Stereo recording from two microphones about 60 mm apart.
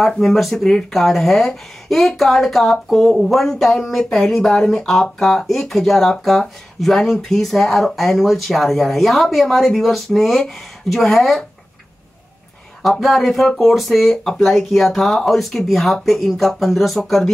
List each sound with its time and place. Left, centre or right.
0.0 s speech: centre
13.0 s speech: centre